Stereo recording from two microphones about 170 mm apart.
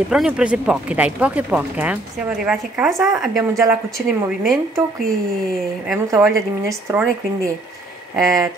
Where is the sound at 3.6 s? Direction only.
20° right (ahead or behind).